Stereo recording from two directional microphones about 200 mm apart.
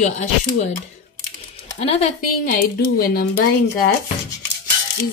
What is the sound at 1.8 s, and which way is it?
Speech, 30° left (ahead or behind).